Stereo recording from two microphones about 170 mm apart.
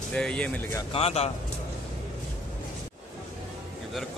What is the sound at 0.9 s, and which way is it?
Speech, 35° left (ahead or behind).